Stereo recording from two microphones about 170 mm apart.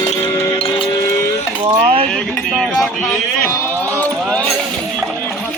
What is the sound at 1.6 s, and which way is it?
Chink, 35° right (ahead or behind).